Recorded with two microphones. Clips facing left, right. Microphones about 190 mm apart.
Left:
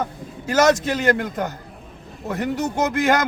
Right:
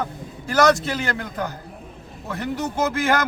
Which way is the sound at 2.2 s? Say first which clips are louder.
Left 3 dB; 20° left (ahead or behind).